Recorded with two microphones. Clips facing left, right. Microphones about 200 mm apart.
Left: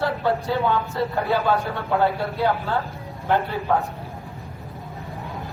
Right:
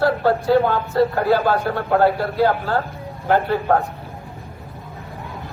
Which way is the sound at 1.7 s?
40° right (ahead or behind).